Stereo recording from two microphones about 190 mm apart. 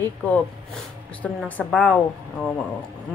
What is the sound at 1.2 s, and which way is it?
Speech, 5° left (ahead or behind).